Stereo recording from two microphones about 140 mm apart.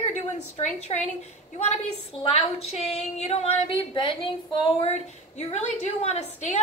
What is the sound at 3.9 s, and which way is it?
A woman's voice, 35° left (ahead or behind).